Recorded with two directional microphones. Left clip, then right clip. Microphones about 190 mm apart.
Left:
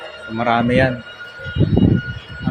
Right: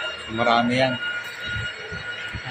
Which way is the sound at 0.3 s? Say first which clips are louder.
Left 3 dB; 45° left (ahead or behind).